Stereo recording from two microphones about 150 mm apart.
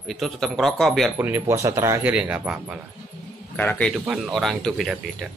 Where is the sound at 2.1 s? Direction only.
10° right (ahead or behind).